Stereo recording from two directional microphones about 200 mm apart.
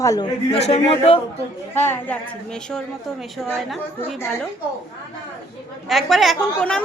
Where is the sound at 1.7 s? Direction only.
10° left (ahead or behind).